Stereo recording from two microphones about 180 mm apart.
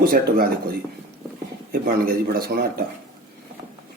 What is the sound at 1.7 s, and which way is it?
Speech, 55° right (ahead or behind).